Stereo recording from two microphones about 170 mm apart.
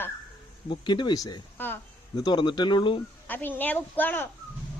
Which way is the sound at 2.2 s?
25° left (ahead or behind).